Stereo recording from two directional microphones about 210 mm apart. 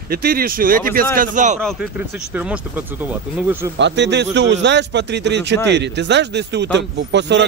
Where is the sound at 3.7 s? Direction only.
60° right (ahead or behind).